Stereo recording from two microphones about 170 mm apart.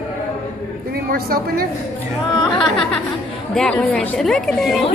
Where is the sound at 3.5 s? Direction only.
5° left (ahead or behind).